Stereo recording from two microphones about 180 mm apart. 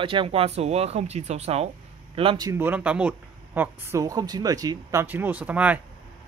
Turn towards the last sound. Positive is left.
turn(degrees=-10)  # may be behind; listen again after turning